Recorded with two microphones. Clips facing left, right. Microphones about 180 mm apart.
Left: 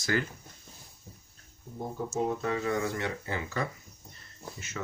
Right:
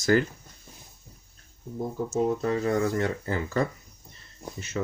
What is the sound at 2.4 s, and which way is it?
Speech, 40° right (ahead or behind).